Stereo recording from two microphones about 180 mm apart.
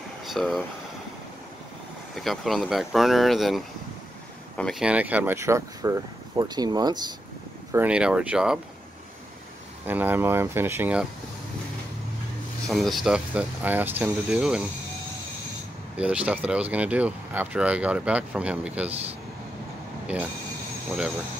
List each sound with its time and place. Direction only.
0.2 s boiling: centre (ahead or behind)
2.1 s speech: centre (ahead or behind); by 7.0 s 20° right (ahead or behind)
7.7 s speech: 5° right (ahead or behind)
9.8 s speech: 10° right (ahead or behind)
12.6 s speech: centre (ahead or behind)
16.0 s speech: 5° right (ahead or behind)